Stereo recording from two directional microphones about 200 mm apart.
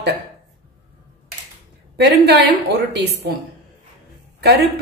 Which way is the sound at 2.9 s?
55° right (ahead or behind).